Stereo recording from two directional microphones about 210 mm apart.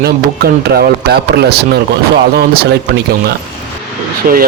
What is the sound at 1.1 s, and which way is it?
Speech, 50° right (ahead or behind).